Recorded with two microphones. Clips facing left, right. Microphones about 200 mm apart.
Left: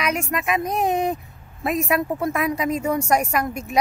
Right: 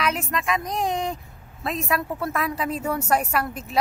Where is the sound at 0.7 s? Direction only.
20° left (ahead or behind).